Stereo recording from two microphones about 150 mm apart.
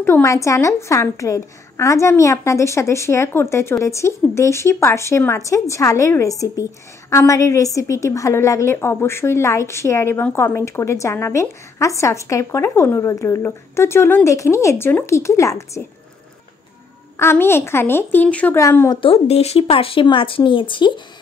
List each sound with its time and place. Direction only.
0.0 s speech: 20° left (ahead or behind)
17.2 s a woman's voice: 15° left (ahead or behind)
18.6 s speech: 20° left (ahead or behind)
18.9 s speech: 40° left (ahead or behind)